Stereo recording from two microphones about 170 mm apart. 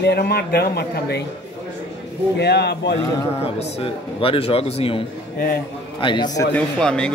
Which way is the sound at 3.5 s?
40° left (ahead or behind).